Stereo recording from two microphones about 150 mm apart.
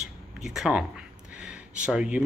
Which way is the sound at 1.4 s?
5° right (ahead or behind).